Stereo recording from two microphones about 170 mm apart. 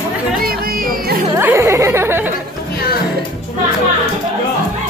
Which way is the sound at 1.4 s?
15° right (ahead or behind).